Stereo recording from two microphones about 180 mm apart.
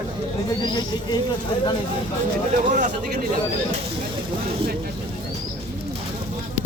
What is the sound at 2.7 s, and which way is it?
Speech, 45° right (ahead or behind).